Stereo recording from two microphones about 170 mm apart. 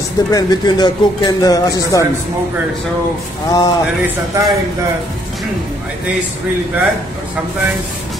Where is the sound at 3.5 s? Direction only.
25° left (ahead or behind).